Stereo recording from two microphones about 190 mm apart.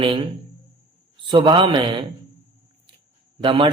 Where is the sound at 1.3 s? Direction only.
25° right (ahead or behind).